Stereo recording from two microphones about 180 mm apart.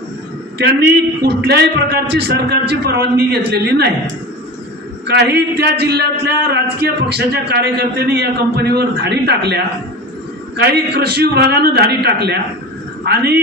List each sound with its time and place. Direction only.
0.6 s a man's voice: 70° right (ahead or behind)
5.0 s a man's voice: 70° right (ahead or behind)
10.6 s a man's voice: 65° right (ahead or behind)